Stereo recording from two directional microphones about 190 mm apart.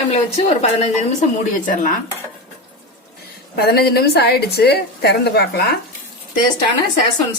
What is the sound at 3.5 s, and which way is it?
A woman's voice, 55° left (ahead or behind).